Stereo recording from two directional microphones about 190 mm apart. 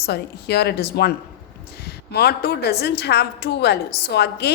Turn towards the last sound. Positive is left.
turn(degrees=60)  # may be behind; listen again after turning